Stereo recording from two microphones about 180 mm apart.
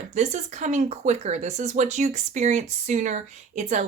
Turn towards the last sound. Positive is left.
turn(degrees=-40)  # may be behind; listen again after turning